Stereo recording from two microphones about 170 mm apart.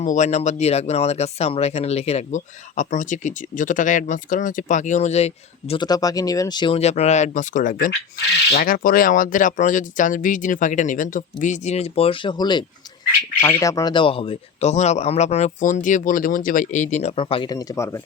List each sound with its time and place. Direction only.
0.0 s speech: 45° left (ahead or behind); by 6.7 s 25° left (ahead or behind)
6.7 s speech: 40° left (ahead or behind); by 18.0 s 15° left (ahead or behind)